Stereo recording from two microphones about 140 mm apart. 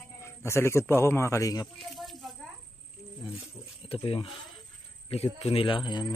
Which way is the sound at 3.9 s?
40° left (ahead or behind).